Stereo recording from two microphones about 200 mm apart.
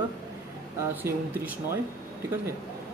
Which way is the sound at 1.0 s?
15° right (ahead or behind).